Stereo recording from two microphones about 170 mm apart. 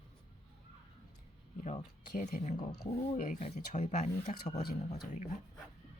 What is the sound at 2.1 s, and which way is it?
Speech, 55° left (ahead or behind).